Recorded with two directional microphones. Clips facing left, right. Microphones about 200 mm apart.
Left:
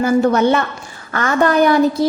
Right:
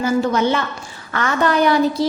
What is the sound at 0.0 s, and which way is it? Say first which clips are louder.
A woman's voice: left 4 dB; 55° left (ahead or behind).